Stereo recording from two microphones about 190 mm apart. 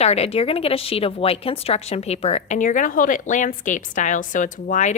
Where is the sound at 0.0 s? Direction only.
35° left (ahead or behind).